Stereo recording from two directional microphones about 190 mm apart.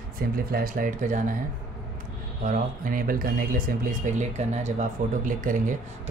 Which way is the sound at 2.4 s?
45° right (ahead or behind).